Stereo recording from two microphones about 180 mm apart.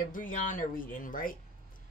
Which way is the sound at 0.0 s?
50° left (ahead or behind).